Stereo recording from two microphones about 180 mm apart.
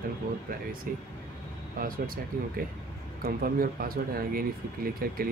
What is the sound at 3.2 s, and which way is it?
Speech, 55° right (ahead or behind).